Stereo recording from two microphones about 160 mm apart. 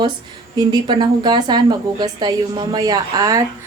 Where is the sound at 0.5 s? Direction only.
25° right (ahead or behind).